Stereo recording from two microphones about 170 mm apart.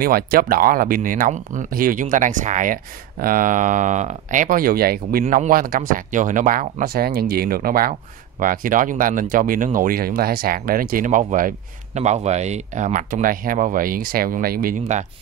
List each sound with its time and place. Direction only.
0.0 s speech: 60° right (ahead or behind)
5.2 s speech: 50° right (ahead or behind)